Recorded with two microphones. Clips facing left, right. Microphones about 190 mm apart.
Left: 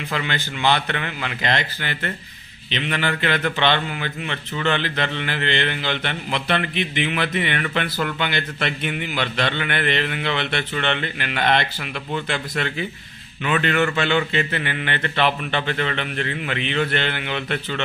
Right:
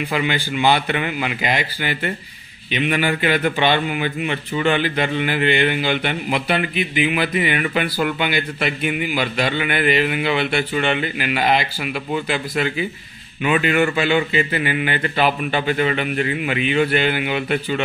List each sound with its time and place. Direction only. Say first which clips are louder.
0.1 s a man's voice: right 3 dB; 10° right (ahead or behind)